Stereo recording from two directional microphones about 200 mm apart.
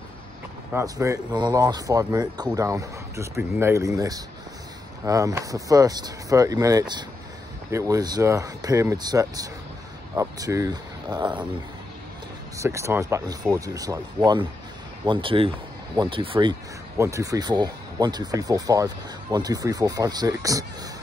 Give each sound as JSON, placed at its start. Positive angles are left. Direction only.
{"t": 0.7, "sound": "speech", "side_deg": -15}
{"t": 12.5, "sound": "speech", "side_deg": -15}